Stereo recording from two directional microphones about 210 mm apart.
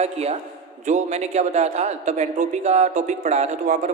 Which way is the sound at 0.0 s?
30° right (ahead or behind).